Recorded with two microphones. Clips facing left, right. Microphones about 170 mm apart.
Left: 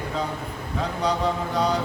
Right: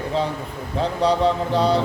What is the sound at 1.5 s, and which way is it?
Speech, 30° right (ahead or behind).